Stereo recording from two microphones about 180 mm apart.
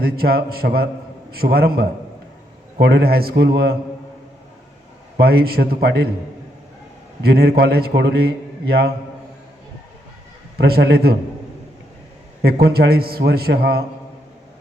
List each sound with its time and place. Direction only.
0.0 s a man's voice: 55° right (ahead or behind)
5.1 s a man's voice: 60° right (ahead or behind)
7.2 s a man's voice: 60° right (ahead or behind)
10.6 s a man's voice: 60° right (ahead or behind)
12.4 s a man's voice: 60° right (ahead or behind)